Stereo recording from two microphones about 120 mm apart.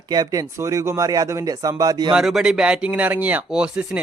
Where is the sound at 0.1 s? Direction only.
30° right (ahead or behind).